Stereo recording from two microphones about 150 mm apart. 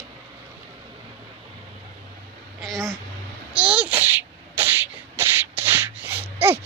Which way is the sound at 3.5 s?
10° right (ahead or behind).